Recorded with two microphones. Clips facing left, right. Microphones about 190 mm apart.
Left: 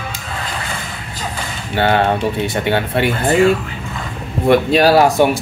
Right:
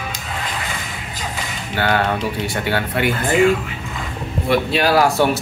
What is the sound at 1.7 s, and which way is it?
Speech, 25° left (ahead or behind).